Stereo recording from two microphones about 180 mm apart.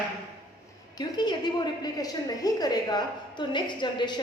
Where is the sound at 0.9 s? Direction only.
25° left (ahead or behind).